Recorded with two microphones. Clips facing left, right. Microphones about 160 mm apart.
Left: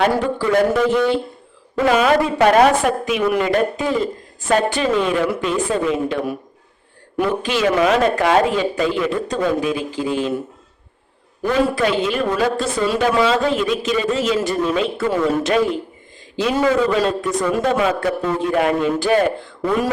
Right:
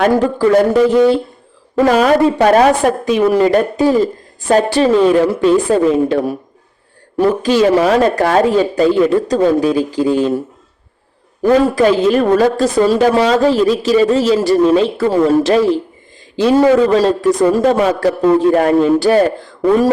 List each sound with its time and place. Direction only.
0.0 s a woman's voice: 45° right (ahead or behind)
11.4 s a woman's voice: 40° right (ahead or behind)